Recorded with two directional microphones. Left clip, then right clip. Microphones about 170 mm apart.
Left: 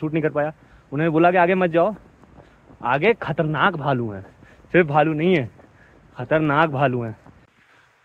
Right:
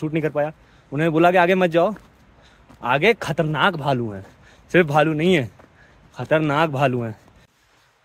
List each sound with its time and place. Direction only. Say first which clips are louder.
0.0 s a man's voice: even; 25° right (ahead or behind)
4.6 s a man's voice: even; 35° right (ahead or behind)